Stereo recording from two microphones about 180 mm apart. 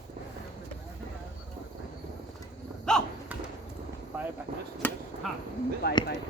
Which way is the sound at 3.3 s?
10° right (ahead or behind).